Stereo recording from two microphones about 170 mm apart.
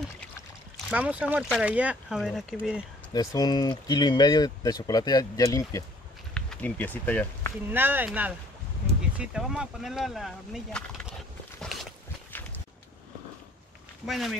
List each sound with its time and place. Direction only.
0.8 s speech: 5° right (ahead or behind)
3.1 s speech: 25° left (ahead or behind)
6.3 s speech: 10° left (ahead or behind)
7.7 s speech: 10° right (ahead or behind)
11.6 s walk: centre (ahead or behind)
12.3 s walk: 10° left (ahead or behind)
14.0 s speech: centre (ahead or behind)